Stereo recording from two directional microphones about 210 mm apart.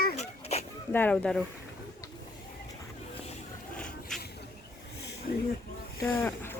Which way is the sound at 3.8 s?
5° left (ahead or behind).